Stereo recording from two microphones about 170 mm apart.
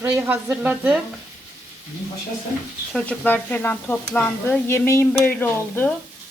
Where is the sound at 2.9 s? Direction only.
10° left (ahead or behind).